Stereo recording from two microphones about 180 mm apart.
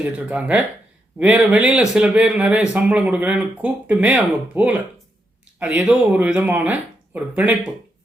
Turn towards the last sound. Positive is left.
turn(degrees=-10)  # may be behind; listen again after turning